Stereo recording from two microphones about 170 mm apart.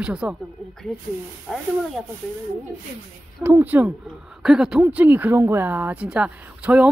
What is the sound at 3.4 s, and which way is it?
Speech, 10° right (ahead or behind).